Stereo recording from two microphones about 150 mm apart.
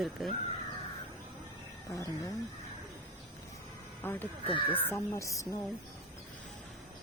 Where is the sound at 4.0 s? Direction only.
15° left (ahead or behind).